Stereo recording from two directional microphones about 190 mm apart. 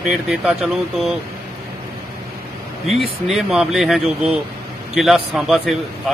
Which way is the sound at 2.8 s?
Centre (ahead or behind).